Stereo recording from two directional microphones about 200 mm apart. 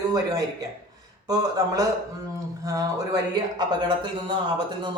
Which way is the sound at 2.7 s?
15° right (ahead or behind).